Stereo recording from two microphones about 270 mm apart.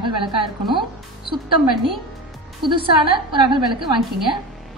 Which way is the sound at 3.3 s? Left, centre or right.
Centre.